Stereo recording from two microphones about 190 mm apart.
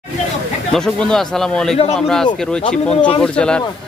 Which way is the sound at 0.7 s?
5° left (ahead or behind).